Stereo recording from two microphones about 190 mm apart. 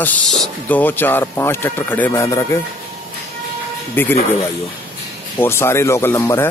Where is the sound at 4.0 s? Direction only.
10° left (ahead or behind).